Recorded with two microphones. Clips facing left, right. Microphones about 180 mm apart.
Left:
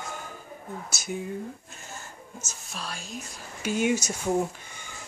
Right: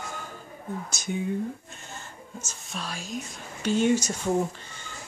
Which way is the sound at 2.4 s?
Centre (ahead or behind).